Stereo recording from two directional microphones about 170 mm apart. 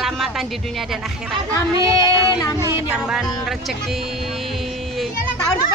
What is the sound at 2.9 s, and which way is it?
Speech, 5° right (ahead or behind).